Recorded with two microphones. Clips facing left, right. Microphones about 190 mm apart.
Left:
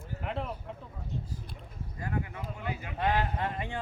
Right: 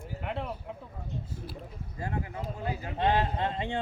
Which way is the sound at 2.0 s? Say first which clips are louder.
Right 1 dB; 30° right (ahead or behind).